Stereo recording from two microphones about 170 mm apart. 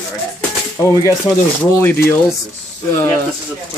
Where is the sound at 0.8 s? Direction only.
15° left (ahead or behind).